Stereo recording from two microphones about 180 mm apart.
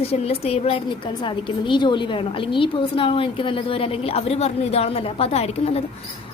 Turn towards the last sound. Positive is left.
turn(degrees=35)  # may be behind; listen again after turning